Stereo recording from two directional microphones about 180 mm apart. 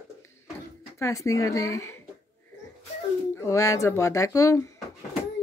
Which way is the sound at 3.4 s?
15° left (ahead or behind).